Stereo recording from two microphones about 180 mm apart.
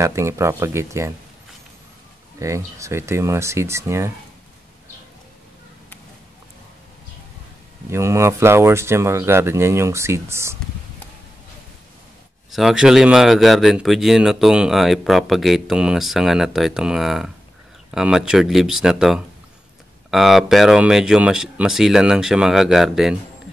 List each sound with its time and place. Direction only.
0.0 s speech: 15° right (ahead or behind)
2.3 s speech: 15° right (ahead or behind)
7.9 s speech: 15° right (ahead or behind)
12.4 s a man's voice: centre (ahead or behind)